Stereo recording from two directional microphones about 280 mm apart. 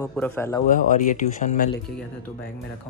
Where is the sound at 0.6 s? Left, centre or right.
Left.